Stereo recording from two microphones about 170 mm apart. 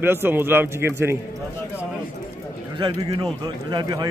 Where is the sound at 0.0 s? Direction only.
10° right (ahead or behind).